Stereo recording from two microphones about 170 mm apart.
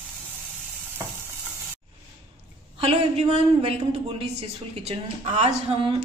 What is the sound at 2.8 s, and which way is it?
A woman's voice, 35° right (ahead or behind).